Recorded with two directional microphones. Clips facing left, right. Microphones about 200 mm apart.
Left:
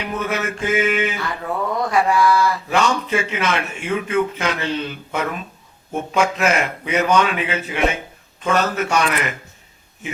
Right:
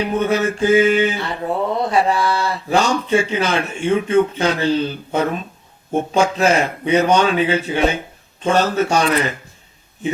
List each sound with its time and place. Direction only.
0.0 s mantra: 30° right (ahead or behind)